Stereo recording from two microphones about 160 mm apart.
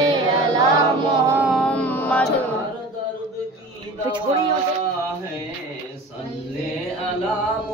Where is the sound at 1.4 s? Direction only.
5° right (ahead or behind).